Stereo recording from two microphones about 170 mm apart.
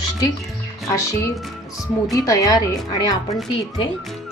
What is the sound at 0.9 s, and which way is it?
Speech, 20° left (ahead or behind).